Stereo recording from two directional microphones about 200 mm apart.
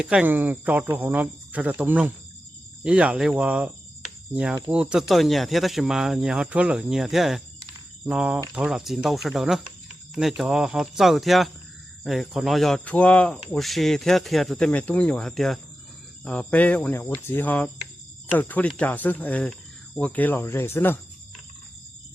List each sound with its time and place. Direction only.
0.0 s speech: 5° right (ahead or behind)
4.7 s speech: 5° right (ahead or behind); by 21.0 s 10° left (ahead or behind)